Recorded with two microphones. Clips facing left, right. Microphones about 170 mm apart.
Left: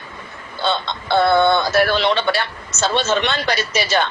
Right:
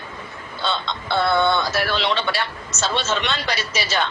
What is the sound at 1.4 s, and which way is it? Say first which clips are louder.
A man's voice: left 5 dB; 50° left (ahead or behind).